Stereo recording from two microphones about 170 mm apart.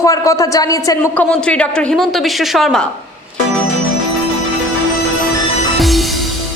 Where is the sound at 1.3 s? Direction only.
5° left (ahead or behind).